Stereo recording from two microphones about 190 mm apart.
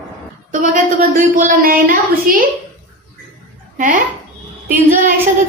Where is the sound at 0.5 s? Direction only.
45° right (ahead or behind).